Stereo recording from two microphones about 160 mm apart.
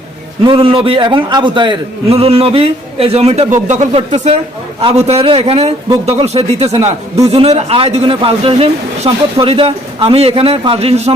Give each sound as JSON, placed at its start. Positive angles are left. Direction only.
{"t": 0.4, "sound": "a man's voice", "side_deg": -30}